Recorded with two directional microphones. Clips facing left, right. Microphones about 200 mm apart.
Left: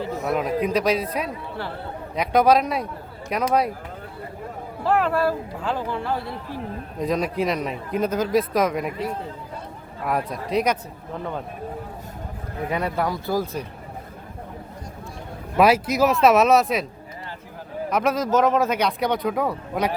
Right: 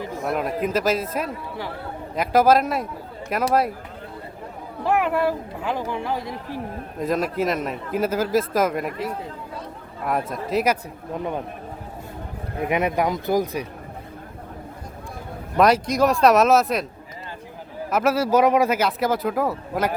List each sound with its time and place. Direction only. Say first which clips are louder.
0.2 s speech: left 1 dB; centre (ahead or behind)
4.8 s speech: even; 15° right (ahead or behind)
7.0 s speech: even; centre (ahead or behind)
11.1 s speech: right 3 dB; 15° right (ahead or behind)
12.5 s speech: right 3 dB; 20° right (ahead or behind)
15.5 s speech: even; 5° left (ahead or behind)
17.9 s speech: right 2 dB; 5° right (ahead or behind)